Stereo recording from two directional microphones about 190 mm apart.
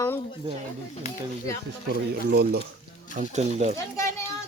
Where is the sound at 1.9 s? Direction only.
60° right (ahead or behind).